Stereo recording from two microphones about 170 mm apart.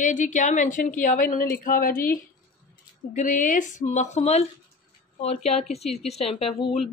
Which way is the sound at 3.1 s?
50° left (ahead or behind).